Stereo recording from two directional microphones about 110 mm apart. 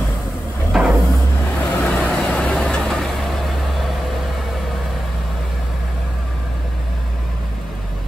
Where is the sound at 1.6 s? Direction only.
10° left (ahead or behind).